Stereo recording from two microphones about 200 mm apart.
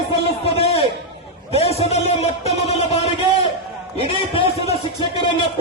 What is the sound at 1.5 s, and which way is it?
Music, 30° left (ahead or behind).